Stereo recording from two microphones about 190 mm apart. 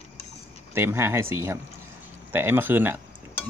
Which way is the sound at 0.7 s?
15° right (ahead or behind).